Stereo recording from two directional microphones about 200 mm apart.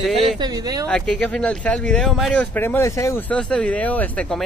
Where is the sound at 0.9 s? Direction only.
5° left (ahead or behind).